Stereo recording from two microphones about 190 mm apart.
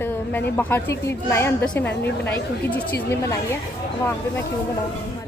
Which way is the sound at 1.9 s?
60° left (ahead or behind).